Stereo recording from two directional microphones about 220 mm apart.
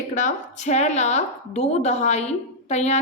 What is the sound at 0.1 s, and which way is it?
A woman's voice, 35° left (ahead or behind).